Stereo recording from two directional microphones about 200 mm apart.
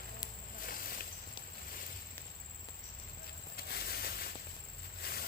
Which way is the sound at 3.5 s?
50° left (ahead or behind).